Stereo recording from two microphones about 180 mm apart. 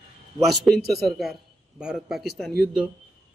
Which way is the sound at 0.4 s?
Centre (ahead or behind).